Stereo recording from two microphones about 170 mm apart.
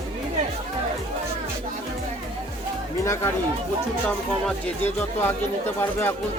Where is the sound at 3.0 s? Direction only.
20° left (ahead or behind).